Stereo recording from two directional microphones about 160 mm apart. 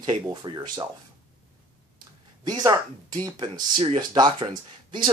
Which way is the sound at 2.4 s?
25° right (ahead or behind).